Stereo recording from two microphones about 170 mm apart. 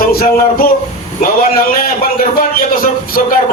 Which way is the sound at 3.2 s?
50° left (ahead or behind).